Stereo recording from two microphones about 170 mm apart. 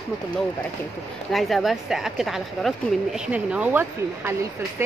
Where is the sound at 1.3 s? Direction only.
Centre (ahead or behind).